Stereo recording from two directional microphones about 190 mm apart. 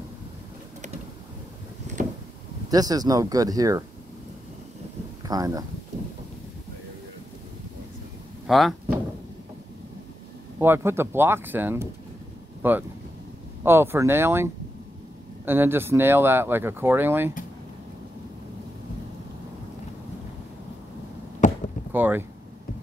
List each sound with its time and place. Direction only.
2.7 s speech: 20° right (ahead or behind)
5.2 s speech: 20° right (ahead or behind)
8.5 s speech: centre (ahead or behind)
10.6 s speech: 10° right (ahead or behind)
21.4 s chop: 40° left (ahead or behind)
21.9 s a sound: 10° right (ahead or behind)